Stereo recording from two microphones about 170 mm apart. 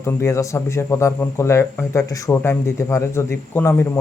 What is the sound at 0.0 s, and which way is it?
Speech, 15° left (ahead or behind).